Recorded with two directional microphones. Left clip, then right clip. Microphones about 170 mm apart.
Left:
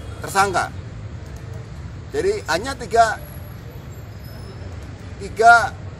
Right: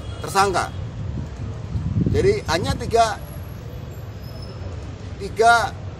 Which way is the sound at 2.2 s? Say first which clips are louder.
Right 1 dB; 5° left (ahead or behind).